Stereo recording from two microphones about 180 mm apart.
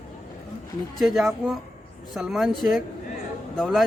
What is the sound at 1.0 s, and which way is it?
A man's voice, centre (ahead or behind).